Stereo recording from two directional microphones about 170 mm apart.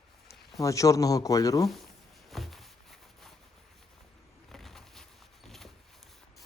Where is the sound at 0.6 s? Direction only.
20° left (ahead or behind).